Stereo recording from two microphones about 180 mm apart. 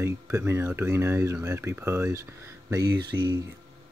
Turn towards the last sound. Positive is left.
turn(degrees=-25)  # may be behind; listen again after turning